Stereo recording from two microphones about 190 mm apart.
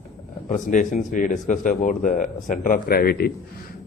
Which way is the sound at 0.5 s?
40° left (ahead or behind).